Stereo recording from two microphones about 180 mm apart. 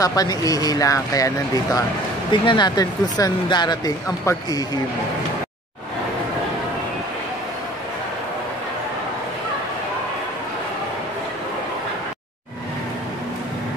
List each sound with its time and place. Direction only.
0.0 s speech: 20° left (ahead or behind)